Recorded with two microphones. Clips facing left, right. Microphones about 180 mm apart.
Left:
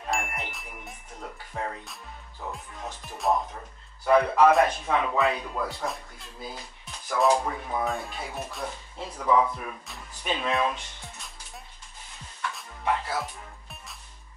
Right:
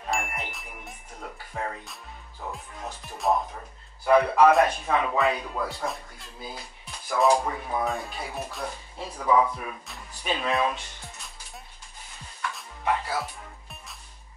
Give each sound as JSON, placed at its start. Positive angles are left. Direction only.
{"t": 0.1, "sound": "ding", "side_deg": 0}
{"t": 3.3, "sound": "speech", "side_deg": 0}
{"t": 12.4, "sound": "music", "side_deg": 0}